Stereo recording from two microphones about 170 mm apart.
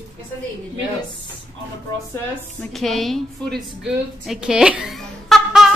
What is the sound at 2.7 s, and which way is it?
A woman's voice, centre (ahead or behind).